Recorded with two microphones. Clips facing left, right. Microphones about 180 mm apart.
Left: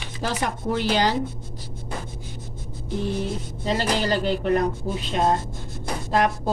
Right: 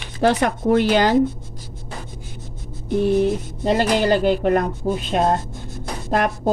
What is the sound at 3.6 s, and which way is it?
Speech, 55° right (ahead or behind).